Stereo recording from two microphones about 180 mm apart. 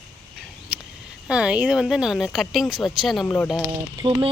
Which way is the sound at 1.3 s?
5° right (ahead or behind).